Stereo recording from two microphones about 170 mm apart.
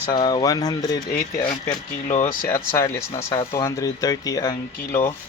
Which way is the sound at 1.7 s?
45° left (ahead or behind).